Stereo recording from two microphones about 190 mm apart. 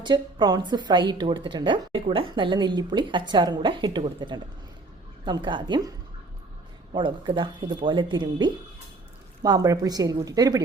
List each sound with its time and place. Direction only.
0.0 s a woman's voice: 25° right (ahead or behind)
6.9 s a woman's voice: 25° right (ahead or behind)